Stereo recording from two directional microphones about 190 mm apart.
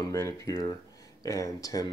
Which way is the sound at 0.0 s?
15° left (ahead or behind).